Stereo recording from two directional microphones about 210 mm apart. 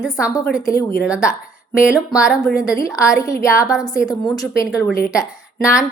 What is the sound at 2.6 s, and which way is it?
A woman's voice, 15° left (ahead or behind).